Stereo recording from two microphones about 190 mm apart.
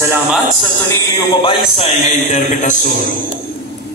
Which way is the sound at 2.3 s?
45° left (ahead or behind).